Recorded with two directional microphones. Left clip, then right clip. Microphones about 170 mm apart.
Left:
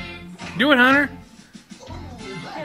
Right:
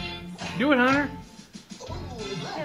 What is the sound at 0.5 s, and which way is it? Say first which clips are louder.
Speech: left 6 dB; 35° left (ahead or behind).